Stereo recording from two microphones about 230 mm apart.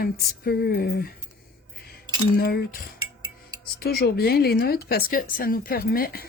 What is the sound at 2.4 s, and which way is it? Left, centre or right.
Speech, left.